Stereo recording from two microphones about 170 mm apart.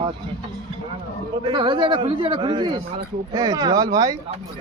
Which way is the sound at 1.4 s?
30° right (ahead or behind).